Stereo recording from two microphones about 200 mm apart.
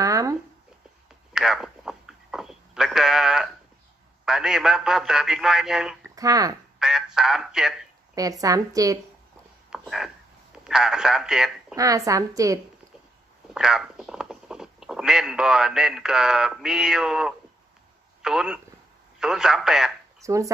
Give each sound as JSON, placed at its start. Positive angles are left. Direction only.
{"t": 0.0, "sound": "a sound", "side_deg": -15}
{"t": 1.3, "sound": "a sound", "side_deg": 0}
{"t": 4.2, "sound": "a man's voice", "side_deg": -5}
{"t": 6.0, "sound": "speech", "side_deg": -15}
{"t": 6.8, "sound": "speech", "side_deg": -5}
{"t": 8.1, "sound": "a woman's voice", "side_deg": -15}
{"t": 9.7, "sound": "a sound", "side_deg": 0}
{"t": 10.6, "sound": "a man's voice", "side_deg": -5}
{"t": 11.7, "sound": "a woman's voice", "side_deg": -15}
{"t": 13.5, "sound": "a man's voice", "side_deg": -5}
{"t": 20.2, "sound": "a woman's voice", "side_deg": -15}